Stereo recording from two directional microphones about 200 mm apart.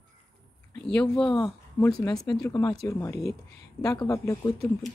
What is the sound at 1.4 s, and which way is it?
Speech, 15° left (ahead or behind).